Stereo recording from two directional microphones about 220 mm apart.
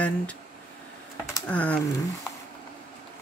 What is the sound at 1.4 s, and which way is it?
Typing, 5° left (ahead or behind).